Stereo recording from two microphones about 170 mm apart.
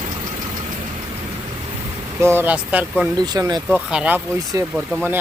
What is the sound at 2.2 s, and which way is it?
Speech, 15° right (ahead or behind).